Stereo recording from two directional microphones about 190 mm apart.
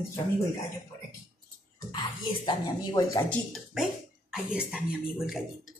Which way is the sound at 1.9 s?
25° left (ahead or behind).